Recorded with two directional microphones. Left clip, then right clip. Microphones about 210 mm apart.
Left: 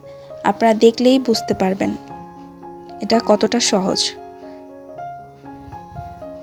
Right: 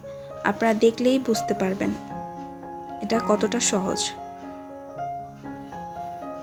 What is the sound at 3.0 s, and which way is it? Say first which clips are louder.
Speech: left 7 dB; 30° left (ahead or behind).